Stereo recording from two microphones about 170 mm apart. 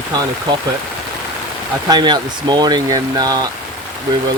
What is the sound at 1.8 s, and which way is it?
Speech, 25° right (ahead or behind).